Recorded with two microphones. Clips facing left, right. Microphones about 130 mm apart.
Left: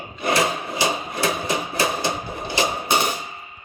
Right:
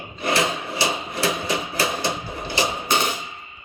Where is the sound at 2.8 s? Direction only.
15° left (ahead or behind).